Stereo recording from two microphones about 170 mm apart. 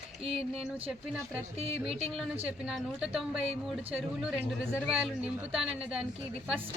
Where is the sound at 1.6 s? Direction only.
35° right (ahead or behind).